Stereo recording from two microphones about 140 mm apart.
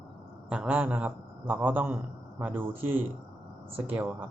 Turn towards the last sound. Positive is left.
turn(degrees=-15)  # may be behind; listen again after turning